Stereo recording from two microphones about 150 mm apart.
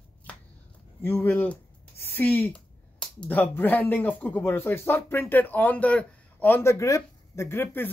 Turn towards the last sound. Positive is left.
turn(degrees=15)  # may be behind; listen again after turning